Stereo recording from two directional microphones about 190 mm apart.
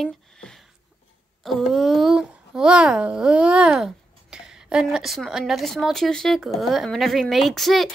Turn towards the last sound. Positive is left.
turn(degrees=0)  # may be behind; listen again after turning